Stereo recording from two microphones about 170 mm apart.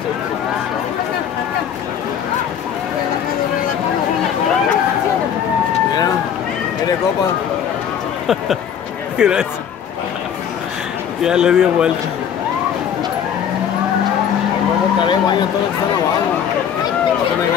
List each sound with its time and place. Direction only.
9.2 s speech: 5° right (ahead or behind)
11.2 s speech: 5° right (ahead or behind)
15.0 s speech: 25° left (ahead or behind)